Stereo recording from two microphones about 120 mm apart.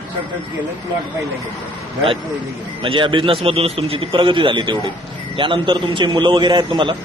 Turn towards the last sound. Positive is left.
turn(degrees=-40)  # may be behind; listen again after turning